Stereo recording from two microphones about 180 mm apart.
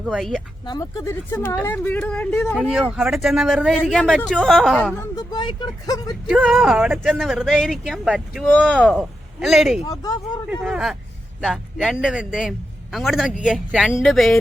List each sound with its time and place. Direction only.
0.0 s speech: centre (ahead or behind)
0.6 s speech: 20° left (ahead or behind)
2.6 s speech: 5° right (ahead or behind)
4.9 s speech: 20° left (ahead or behind)
6.2 s speech: centre (ahead or behind)
9.9 s speech: 20° left (ahead or behind)
10.5 s speech: 5° right (ahead or behind)